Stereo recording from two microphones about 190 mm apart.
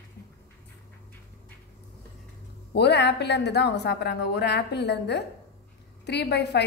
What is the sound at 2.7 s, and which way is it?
A woman's voice, 60° left (ahead or behind).